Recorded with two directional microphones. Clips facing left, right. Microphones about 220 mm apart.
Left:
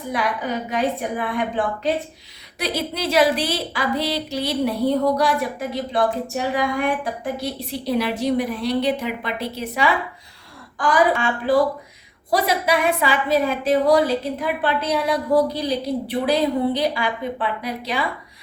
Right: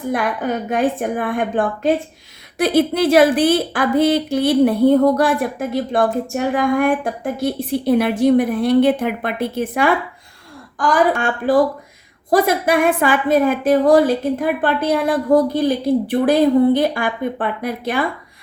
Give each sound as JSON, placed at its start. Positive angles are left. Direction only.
{"t": 0.1, "sound": "a woman's voice", "side_deg": -50}